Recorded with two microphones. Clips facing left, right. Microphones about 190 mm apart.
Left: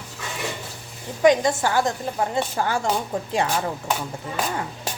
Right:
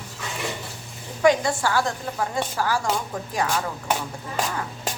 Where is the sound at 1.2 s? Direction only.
20° left (ahead or behind).